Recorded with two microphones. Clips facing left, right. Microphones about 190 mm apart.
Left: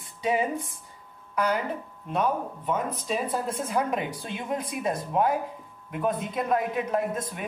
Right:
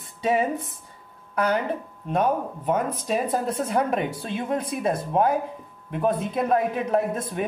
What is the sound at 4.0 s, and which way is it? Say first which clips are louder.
Speech: right 5 dB; 25° right (ahead or behind).